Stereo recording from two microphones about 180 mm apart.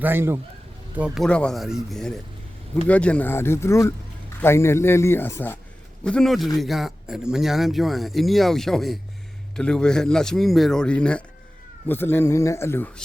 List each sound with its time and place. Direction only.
0.0 s speech: 10° right (ahead or behind); by 12.9 s 15° left (ahead or behind)